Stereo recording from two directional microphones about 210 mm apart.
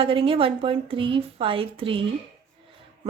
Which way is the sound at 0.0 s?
25° right (ahead or behind).